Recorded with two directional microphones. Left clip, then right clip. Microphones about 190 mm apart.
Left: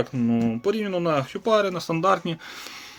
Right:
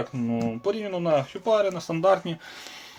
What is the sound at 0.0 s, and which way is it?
Speech, 50° left (ahead or behind).